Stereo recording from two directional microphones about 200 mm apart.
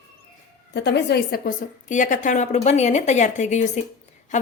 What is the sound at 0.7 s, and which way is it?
A woman's voice, 60° left (ahead or behind).